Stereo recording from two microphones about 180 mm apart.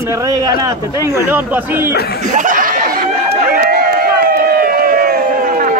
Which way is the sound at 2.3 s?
45° right (ahead or behind).